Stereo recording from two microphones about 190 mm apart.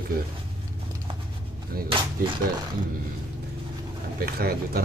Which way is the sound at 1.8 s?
25° right (ahead or behind).